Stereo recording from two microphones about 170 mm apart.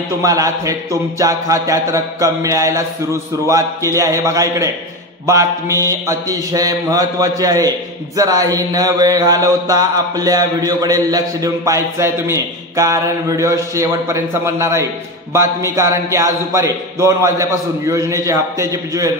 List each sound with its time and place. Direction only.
0.2 s mantra: 20° right (ahead or behind)
15.3 s speech: 15° right (ahead or behind)